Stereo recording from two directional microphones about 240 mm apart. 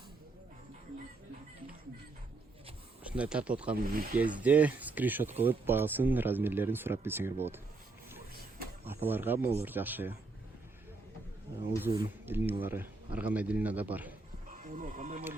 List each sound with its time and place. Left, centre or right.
3.0 s speech: centre
3.8 s speech: right
4.4 s speech: centre
8.9 s speech: centre
11.8 s speech: centre
14.4 s speech: right